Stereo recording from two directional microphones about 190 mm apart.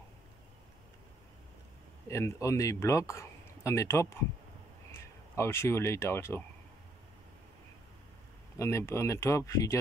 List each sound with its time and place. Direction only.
2.0 s speech: 15° left (ahead or behind)
8.5 s speech: 15° left (ahead or behind)